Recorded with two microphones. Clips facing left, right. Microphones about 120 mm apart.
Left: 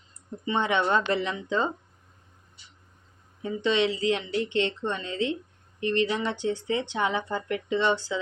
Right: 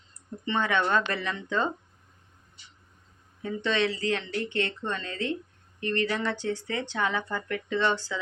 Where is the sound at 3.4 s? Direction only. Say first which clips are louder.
Left 2 dB; 15° left (ahead or behind).